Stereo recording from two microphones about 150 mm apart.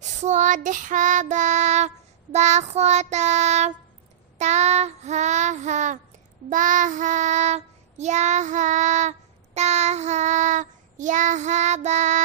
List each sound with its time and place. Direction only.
0.0 s child singing: 55° right (ahead or behind)